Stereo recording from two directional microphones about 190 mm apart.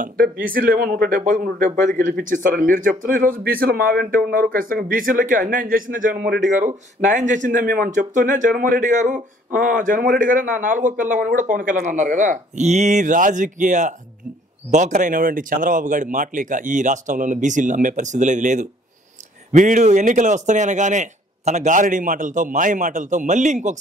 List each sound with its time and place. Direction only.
0.5 s a man's voice: 50° right (ahead or behind)